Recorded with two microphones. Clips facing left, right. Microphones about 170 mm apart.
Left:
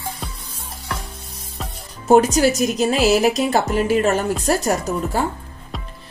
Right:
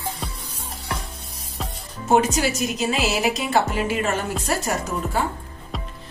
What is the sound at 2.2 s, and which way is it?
A woman's voice, 40° left (ahead or behind).